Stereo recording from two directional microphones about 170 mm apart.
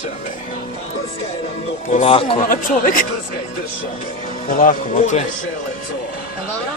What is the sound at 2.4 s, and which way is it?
Speech, 55° left (ahead or behind).